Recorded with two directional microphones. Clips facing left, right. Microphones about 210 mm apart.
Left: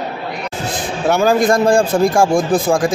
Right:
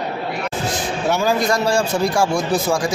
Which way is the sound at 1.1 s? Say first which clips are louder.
Left 7 dB; 50° left (ahead or behind).